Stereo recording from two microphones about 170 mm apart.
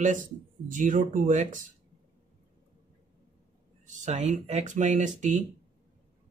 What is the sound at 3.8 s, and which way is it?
Speech, 45° right (ahead or behind).